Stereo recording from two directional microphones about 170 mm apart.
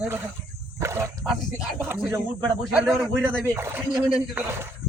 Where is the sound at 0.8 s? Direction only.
15° right (ahead or behind).